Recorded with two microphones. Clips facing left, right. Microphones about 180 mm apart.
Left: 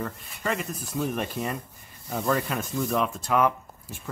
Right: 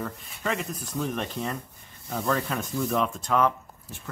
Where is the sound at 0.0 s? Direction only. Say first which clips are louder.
Left 1 dB; centre (ahead or behind).